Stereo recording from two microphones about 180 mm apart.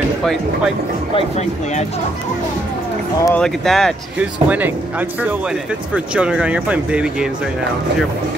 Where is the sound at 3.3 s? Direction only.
Centre (ahead or behind).